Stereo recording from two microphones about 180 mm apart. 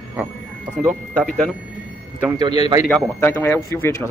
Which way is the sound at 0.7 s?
5° right (ahead or behind).